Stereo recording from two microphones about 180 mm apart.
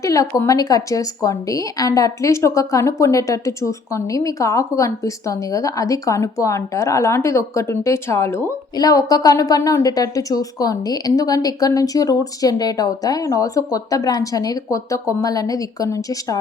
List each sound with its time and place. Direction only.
0.0 s a woman's voice: 20° left (ahead or behind)